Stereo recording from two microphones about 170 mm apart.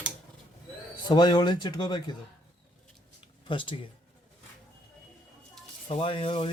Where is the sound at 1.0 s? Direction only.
25° left (ahead or behind).